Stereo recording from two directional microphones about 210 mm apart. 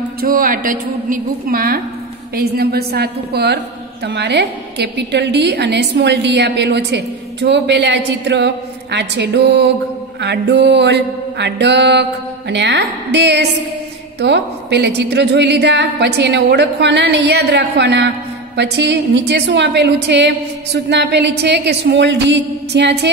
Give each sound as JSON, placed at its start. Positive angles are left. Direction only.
{"t": 0.2, "sound": "a woman's voice", "side_deg": -45}